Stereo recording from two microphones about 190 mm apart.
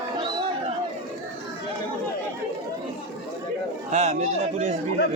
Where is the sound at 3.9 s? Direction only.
40° right (ahead or behind).